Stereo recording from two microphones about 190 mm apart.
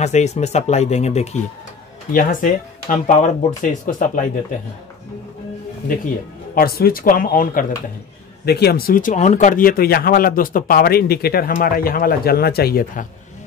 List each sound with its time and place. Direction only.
0.0 s speech: 35° left (ahead or behind)
2.1 s speech: 45° left (ahead or behind)
6.5 s speech: 50° left (ahead or behind)
8.5 s speech: 55° left (ahead or behind)